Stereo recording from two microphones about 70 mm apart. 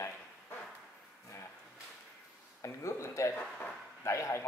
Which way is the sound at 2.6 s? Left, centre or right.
Left.